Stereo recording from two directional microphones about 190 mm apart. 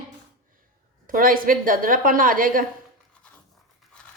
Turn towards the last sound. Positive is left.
turn(degrees=5)  # may be behind; listen again after turning